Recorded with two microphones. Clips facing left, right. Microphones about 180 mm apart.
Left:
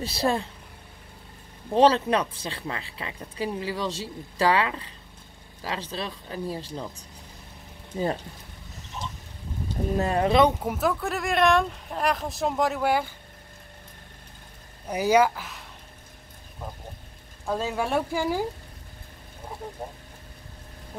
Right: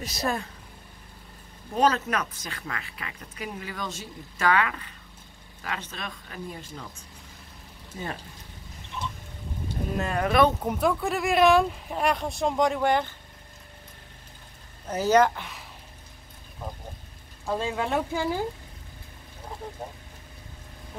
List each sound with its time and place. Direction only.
0.0 s speech: 30° left (ahead or behind)
1.8 s speech: 30° left (ahead or behind)
9.9 s speech: 25° left (ahead or behind)
10.6 s speech: 5° left (ahead or behind)
14.9 s speech: 10° left (ahead or behind)
17.5 s speech: 5° left (ahead or behind)